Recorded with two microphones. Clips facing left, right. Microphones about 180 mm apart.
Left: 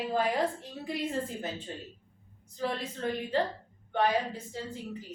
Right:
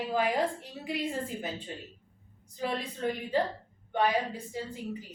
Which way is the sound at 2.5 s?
15° right (ahead or behind).